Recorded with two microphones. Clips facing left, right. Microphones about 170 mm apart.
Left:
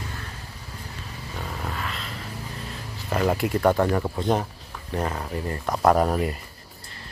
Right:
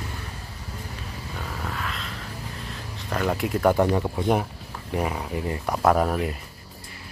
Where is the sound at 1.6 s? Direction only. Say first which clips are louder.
Right 1 dB; centre (ahead or behind).